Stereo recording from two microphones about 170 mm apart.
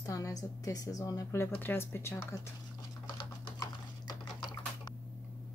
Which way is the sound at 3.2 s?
25° left (ahead or behind).